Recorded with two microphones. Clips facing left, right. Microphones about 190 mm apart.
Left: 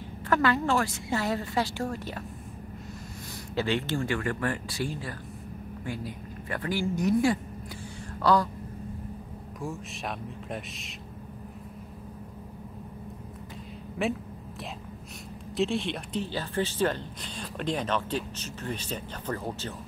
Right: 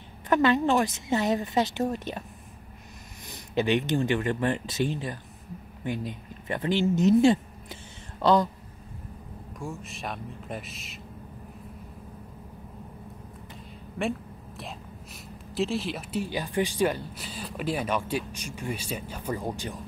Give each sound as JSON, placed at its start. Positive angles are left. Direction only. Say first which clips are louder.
{"t": 0.3, "sound": "a woman's voice", "louder": "right 3 dB", "side_deg": -20}
{"t": 3.5, "sound": "a woman's voice", "louder": "right 4 dB", "side_deg": -20}
{"t": 9.6, "sound": "speech", "louder": "left 1 dB", "side_deg": 0}
{"t": 14.0, "sound": "speech", "louder": "even", "side_deg": 5}
{"t": 15.5, "sound": "speech", "louder": "even", "side_deg": 0}